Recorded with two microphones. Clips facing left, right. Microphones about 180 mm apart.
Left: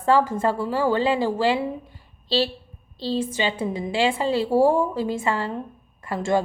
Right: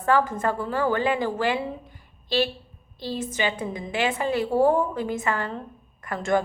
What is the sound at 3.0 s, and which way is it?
A woman's voice, 30° left (ahead or behind).